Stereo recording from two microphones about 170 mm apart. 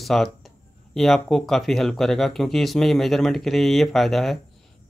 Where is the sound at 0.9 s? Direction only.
Centre (ahead or behind).